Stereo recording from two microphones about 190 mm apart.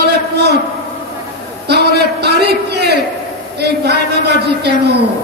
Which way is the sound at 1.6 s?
60° right (ahead or behind).